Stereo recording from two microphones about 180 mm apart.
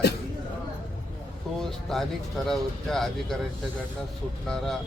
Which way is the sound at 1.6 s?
Centre (ahead or behind).